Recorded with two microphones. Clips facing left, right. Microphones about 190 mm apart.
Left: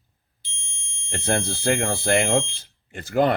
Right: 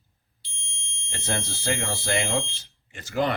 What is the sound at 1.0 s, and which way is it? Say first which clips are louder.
Speech: left 6 dB; 55° left (ahead or behind).